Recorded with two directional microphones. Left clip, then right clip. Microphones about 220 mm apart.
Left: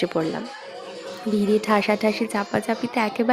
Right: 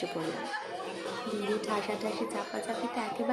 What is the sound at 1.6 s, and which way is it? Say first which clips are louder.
Speech: left 12 dB; 40° left (ahead or behind).